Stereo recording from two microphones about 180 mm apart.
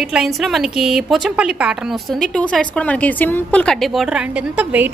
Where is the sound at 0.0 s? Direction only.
5° right (ahead or behind).